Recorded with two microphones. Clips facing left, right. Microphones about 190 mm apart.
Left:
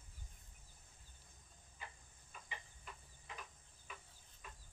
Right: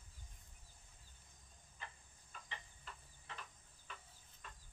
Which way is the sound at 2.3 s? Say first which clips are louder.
Even; 10° left (ahead or behind).